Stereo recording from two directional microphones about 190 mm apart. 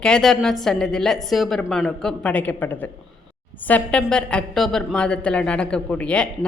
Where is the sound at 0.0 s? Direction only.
5° left (ahead or behind).